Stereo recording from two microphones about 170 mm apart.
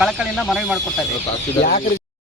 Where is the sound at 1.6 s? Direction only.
55° left (ahead or behind).